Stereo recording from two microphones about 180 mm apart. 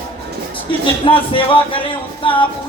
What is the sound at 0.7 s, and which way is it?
Speech, 30° left (ahead or behind).